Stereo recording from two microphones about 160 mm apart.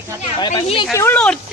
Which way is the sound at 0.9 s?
15° left (ahead or behind).